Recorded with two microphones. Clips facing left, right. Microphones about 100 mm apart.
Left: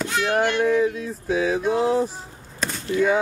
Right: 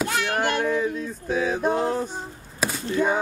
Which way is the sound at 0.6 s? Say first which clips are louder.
Left 4 dB; centre (ahead or behind).